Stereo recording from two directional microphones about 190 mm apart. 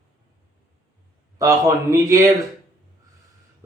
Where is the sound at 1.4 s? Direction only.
15° right (ahead or behind).